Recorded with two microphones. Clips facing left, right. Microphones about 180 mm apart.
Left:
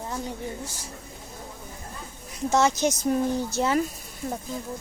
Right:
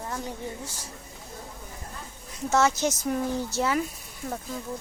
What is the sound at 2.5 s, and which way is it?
A woman's voice, 15° left (ahead or behind).